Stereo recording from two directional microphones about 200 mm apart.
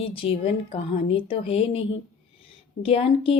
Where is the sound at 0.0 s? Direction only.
25° left (ahead or behind).